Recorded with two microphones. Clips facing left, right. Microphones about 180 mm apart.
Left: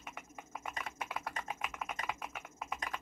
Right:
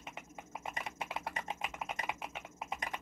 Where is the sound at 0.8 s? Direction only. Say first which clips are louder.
Right 1 dB; 25° right (ahead or behind).